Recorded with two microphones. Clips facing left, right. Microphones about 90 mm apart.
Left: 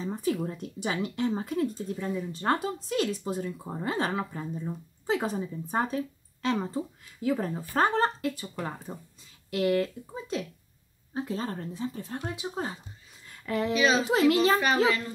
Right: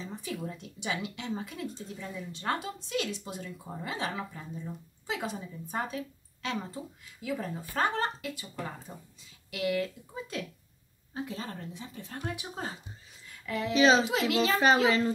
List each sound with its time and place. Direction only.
0.0 s speech: 45° left (ahead or behind)
11.1 s speech: 35° left (ahead or behind)
12.2 s speech: 20° left (ahead or behind)
13.3 s a sound: 40° left (ahead or behind)
13.7 s a child's voice: 30° right (ahead or behind)
14.0 s speech: 35° left (ahead or behind)
14.9 s a child's voice: 30° right (ahead or behind)